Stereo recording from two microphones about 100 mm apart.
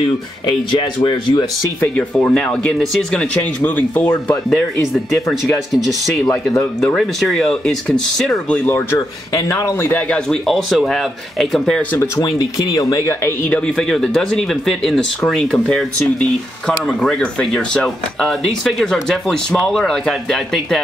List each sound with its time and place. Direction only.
0.5 s speech: 55° left (ahead or behind)
2.0 s speech: 10° left (ahead or behind)
4.5 s speech: 5° left (ahead or behind)
6.8 s speech: 5° left (ahead or behind)
8.9 s a man's voice: 30° left (ahead or behind)
10.0 s speech: 10° left (ahead or behind)
10.4 s speech: centre (ahead or behind)
12.2 s speech: 35° left (ahead or behind)
13.7 s speech: 5° left (ahead or behind)